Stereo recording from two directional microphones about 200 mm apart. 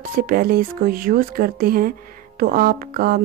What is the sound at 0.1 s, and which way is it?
Speech, 45° right (ahead or behind).